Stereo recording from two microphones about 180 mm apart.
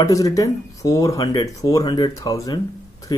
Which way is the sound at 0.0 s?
20° left (ahead or behind).